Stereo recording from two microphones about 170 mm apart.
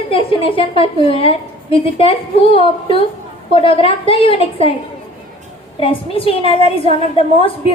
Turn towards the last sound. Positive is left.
turn(degrees=30)  # may be behind; listen again after turning